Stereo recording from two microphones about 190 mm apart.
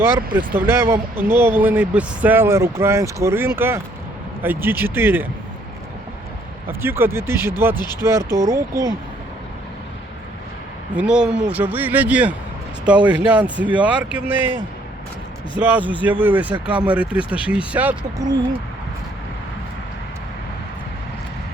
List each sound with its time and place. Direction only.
0.0 s speech: 10° right (ahead or behind)
6.7 s speech: 10° right (ahead or behind)
7.8 s speech: 20° left (ahead or behind)
8.3 s speech: 15° right (ahead or behind)
10.9 s speech: 5° right (ahead or behind)
15.5 s speech: 5° right (ahead or behind)